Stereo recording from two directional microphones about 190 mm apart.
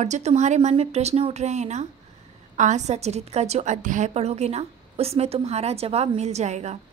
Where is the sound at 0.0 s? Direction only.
35° right (ahead or behind).